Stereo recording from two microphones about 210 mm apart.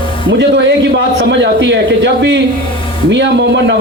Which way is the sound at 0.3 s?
60° right (ahead or behind).